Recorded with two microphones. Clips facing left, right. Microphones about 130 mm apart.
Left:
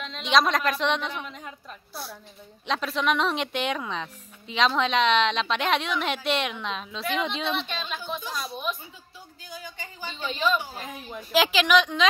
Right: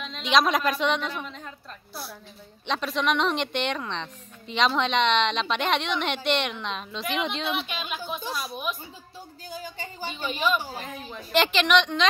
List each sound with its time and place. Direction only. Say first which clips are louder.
0.0 s a woman's voice: even; centre (ahead or behind)
2.6 s speech: even; centre (ahead or behind)
9.5 s a sound: right 3 dB; 30° right (ahead or behind)
10.1 s a woman's voice: even; 5° right (ahead or behind)